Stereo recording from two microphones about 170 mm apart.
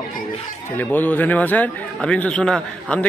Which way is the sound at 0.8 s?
10° left (ahead or behind).